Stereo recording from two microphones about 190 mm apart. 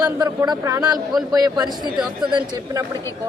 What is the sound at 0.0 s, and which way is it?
Speech, 20° right (ahead or behind).